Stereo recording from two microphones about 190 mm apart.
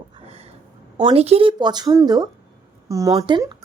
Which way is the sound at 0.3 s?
30° right (ahead or behind).